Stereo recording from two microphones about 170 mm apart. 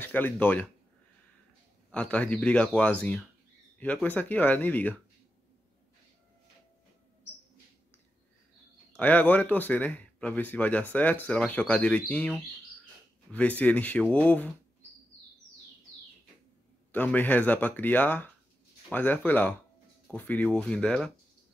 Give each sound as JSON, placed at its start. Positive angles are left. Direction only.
{"t": 0.0, "sound": "speech", "side_deg": 10}
{"t": 1.9, "sound": "speech", "side_deg": 10}
{"t": 8.9, "sound": "speech", "side_deg": 10}
{"t": 16.9, "sound": "speech", "side_deg": 10}